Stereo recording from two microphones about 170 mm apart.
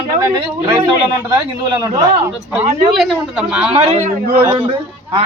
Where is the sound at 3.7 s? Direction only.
40° right (ahead or behind).